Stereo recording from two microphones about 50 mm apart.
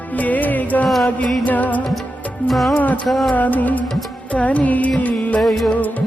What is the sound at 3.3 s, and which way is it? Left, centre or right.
Music, left.